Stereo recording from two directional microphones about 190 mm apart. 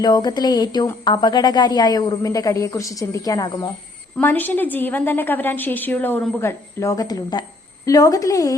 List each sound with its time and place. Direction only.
0.0 s a woman's voice: 20° left (ahead or behind)